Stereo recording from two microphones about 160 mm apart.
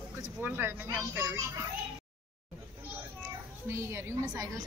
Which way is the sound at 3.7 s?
15° right (ahead or behind).